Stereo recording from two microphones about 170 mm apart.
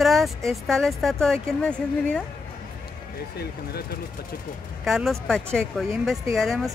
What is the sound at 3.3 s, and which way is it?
Speech, 65° left (ahead or behind).